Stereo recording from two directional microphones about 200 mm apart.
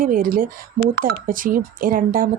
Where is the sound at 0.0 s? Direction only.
45° right (ahead or behind).